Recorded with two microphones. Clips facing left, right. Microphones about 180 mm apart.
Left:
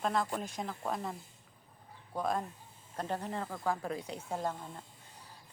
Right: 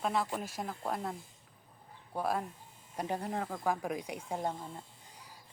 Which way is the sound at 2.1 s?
5° right (ahead or behind).